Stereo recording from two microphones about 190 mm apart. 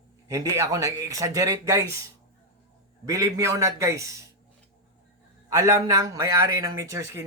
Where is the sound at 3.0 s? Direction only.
15° right (ahead or behind).